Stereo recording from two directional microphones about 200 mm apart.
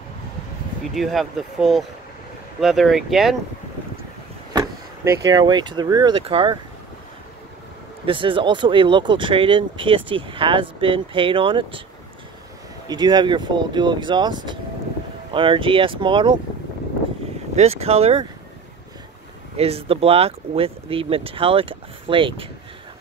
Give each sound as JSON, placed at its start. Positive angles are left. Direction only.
{"t": 0.9, "sound": "speech", "side_deg": 0}
{"t": 4.6, "sound": "speech", "side_deg": -20}
{"t": 8.0, "sound": "speech", "side_deg": -25}
{"t": 12.8, "sound": "speech", "side_deg": -20}
{"t": 17.6, "sound": "speech", "side_deg": -30}
{"t": 19.5, "sound": "speech", "side_deg": -30}